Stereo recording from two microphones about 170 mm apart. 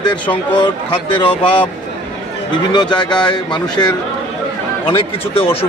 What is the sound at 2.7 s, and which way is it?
A man's voice, 25° left (ahead or behind).